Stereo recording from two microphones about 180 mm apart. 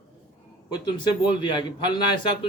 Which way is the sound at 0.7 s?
25° left (ahead or behind).